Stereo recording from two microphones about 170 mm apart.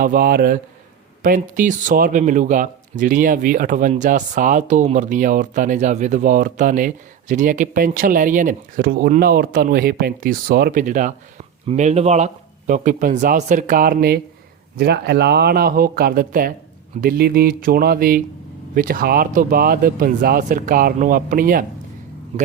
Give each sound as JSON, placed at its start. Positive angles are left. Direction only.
{"t": 0.0, "sound": "speech", "side_deg": -55}
{"t": 1.2, "sound": "speech", "side_deg": -50}
{"t": 14.8, "sound": "speech", "side_deg": -75}